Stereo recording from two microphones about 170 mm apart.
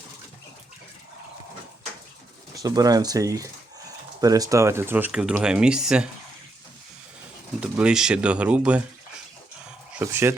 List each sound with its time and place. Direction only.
2.6 s speech: 20° right (ahead or behind); by 6.1 s 5° right (ahead or behind)
7.6 s speech: 5° right (ahead or behind)
10.0 s speech: 15° right (ahead or behind)